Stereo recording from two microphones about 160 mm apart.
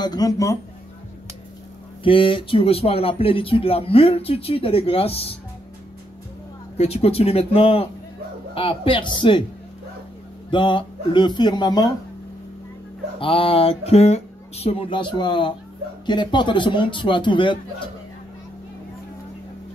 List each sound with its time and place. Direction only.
0.0 s speech: 25° left (ahead or behind)
2.0 s speech: 35° left (ahead or behind)
6.8 s speech: 40° left (ahead or behind)
10.5 s speech: 30° left (ahead or behind)
13.2 s speech: 35° left (ahead or behind)